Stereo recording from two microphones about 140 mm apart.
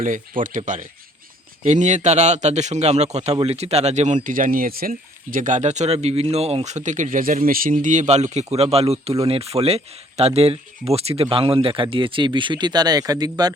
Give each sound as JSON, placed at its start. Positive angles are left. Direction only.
{"t": 0.4, "sound": "speech", "side_deg": -70}
{"t": 1.6, "sound": "a man's voice", "side_deg": -55}